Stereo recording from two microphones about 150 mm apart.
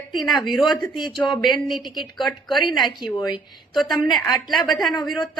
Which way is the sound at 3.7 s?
Centre (ahead or behind).